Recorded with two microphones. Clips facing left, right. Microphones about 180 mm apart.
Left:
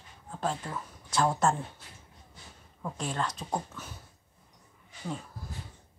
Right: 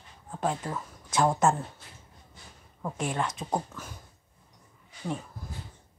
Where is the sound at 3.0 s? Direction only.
15° right (ahead or behind).